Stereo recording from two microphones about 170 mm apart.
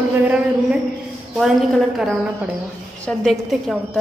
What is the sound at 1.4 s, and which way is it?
A woman's voice, centre (ahead or behind).